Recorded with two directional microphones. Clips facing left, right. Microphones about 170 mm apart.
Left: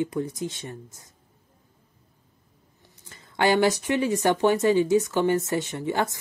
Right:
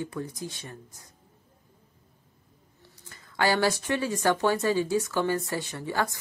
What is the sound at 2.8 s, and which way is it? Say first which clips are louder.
A woman's voice: even; 20° left (ahead or behind).